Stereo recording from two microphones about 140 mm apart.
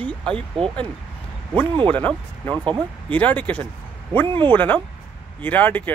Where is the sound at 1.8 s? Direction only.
10° left (ahead or behind).